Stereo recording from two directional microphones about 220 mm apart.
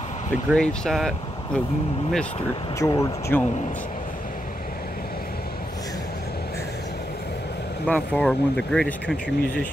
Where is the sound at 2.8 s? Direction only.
15° left (ahead or behind).